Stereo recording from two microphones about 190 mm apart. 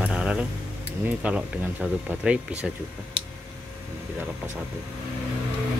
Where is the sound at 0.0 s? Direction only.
5° right (ahead or behind).